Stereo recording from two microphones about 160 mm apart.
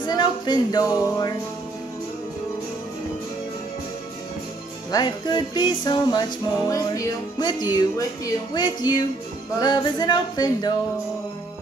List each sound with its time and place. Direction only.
0.0 s speech: 30° left (ahead or behind)
4.9 s speech: 25° left (ahead or behind)